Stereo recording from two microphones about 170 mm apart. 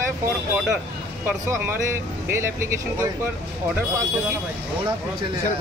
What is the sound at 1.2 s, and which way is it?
Speech, 10° right (ahead or behind).